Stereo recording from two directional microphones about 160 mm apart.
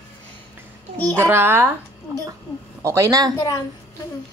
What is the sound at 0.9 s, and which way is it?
Speech, 10° left (ahead or behind).